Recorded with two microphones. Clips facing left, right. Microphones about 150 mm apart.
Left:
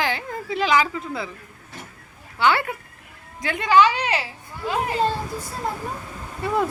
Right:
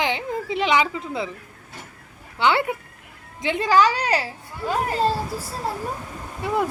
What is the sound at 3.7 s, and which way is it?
A child's voice, 40° right (ahead or behind).